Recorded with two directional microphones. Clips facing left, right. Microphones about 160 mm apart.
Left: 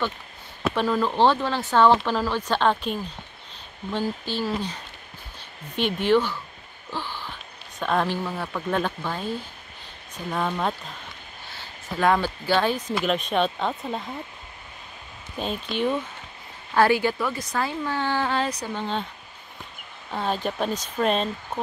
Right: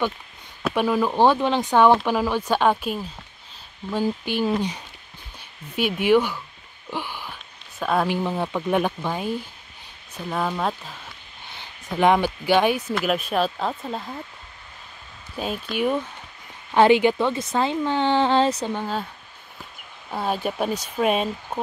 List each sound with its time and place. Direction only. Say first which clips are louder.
0.7 s speech: right 2 dB; 10° right (ahead or behind)
5.8 s speech: right 2 dB; 10° right (ahead or behind)
6.9 s a sound: right 2 dB; 15° right (ahead or behind)
7.8 s speech: right 2 dB; 5° right (ahead or behind)
8.2 s speech: right 5 dB; 20° right (ahead or behind); by 10.7 s 5° right (ahead or behind)
11.5 s speech: right 3 dB; 20° right (ahead or behind); by 14.0 s centre (ahead or behind)
15.3 s speech: right 1 dB; 5° right (ahead or behind)
16.7 s speech: right 4 dB; 20° right (ahead or behind)
18.7 s speech: right 2 dB; 10° right (ahead or behind)
20.1 s speech: right 1 dB; 10° right (ahead or behind)